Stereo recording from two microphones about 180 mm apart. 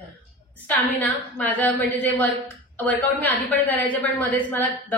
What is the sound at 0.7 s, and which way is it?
A woman's voice, 10° left (ahead or behind).